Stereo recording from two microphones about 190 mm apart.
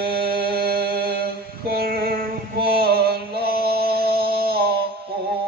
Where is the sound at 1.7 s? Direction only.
55° right (ahead or behind).